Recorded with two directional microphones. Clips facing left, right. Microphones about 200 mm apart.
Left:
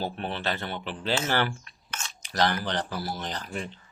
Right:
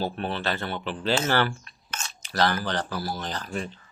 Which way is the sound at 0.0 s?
15° left (ahead or behind).